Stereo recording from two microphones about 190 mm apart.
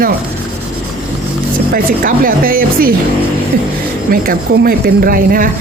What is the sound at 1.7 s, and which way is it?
Speech, 45° right (ahead or behind).